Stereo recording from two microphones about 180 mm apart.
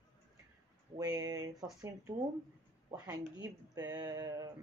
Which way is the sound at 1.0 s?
20° right (ahead or behind).